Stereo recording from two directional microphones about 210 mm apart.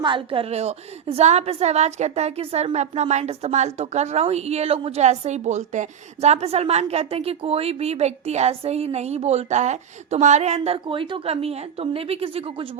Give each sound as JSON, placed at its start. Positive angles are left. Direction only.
{"t": 0.0, "sound": "a woman's voice", "side_deg": -25}